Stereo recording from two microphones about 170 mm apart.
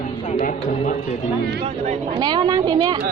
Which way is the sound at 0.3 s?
50° left (ahead or behind).